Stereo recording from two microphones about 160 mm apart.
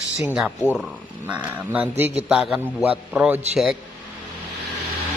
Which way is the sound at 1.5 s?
10° right (ahead or behind).